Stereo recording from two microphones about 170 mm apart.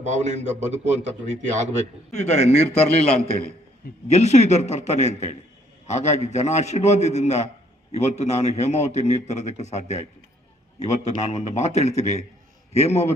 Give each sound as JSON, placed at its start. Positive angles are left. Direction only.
{"t": 0.0, "sound": "a man's voice", "side_deg": -40}
{"t": 2.1, "sound": "a man's voice", "side_deg": 40}
{"t": 4.1, "sound": "a man's voice", "side_deg": 40}